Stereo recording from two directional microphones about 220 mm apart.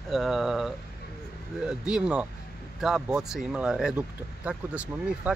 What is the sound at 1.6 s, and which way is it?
Speech, 5° right (ahead or behind).